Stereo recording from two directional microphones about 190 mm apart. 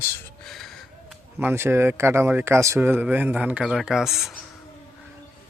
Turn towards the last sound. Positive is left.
turn(degrees=0)  # may be behind; listen again after turning